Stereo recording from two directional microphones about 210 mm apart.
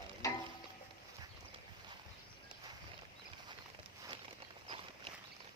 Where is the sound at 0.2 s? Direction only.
15° left (ahead or behind).